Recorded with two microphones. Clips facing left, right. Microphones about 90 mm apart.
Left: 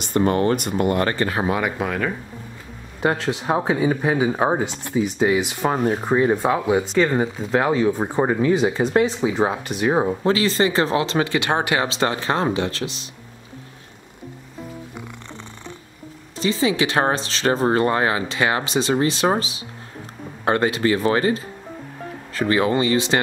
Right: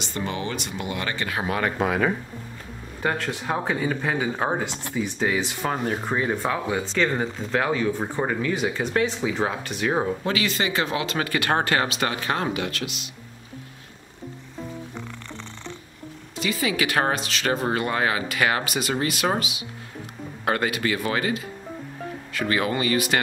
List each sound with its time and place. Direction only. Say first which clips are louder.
0.0 s speech: left 10 dB; 50° left (ahead or behind); by 1.5 s 35° left (ahead or behind)
1.6 s speech: left 1 dB; 5° left (ahead or behind)
1.9 s speech: right 1 dB; 5° right (ahead or behind)
3.0 s speech: left 5 dB; 20° left (ahead or behind)
7.5 s speech: left 5 dB; 20° left (ahead or behind)
10.2 s speech: left 6 dB; 35° left (ahead or behind); by 11.9 s 15° left (ahead or behind)
11.9 s speech: left 4 dB; 30° left (ahead or behind)
16.3 s speech: left 5 dB; 30° left (ahead or behind)